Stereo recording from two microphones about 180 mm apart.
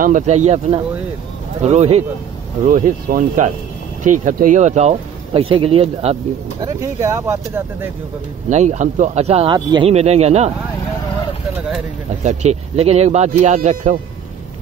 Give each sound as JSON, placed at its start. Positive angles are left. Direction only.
{"t": 0.0, "sound": "speech", "side_deg": -45}
{"t": 2.6, "sound": "speech", "side_deg": -50}
{"t": 6.6, "sound": "speech", "side_deg": -15}
{"t": 8.5, "sound": "speech", "side_deg": -40}
{"t": 12.2, "sound": "speech", "side_deg": -40}